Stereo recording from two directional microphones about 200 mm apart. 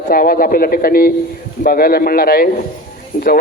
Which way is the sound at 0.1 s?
45° left (ahead or behind).